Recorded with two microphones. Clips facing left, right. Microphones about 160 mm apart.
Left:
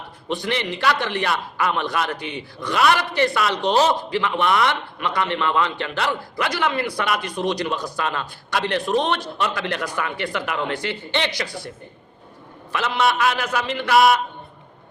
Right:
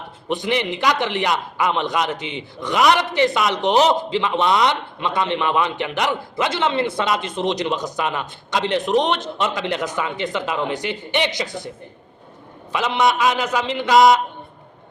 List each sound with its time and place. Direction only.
0.3 s a man's voice: 20° right (ahead or behind)
12.7 s a man's voice: 15° right (ahead or behind)